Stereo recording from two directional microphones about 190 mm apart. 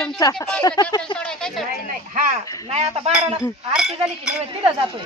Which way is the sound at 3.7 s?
Centre (ahead or behind).